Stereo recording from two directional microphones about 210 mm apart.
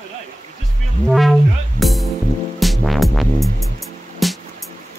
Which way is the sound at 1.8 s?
Centre (ahead or behind).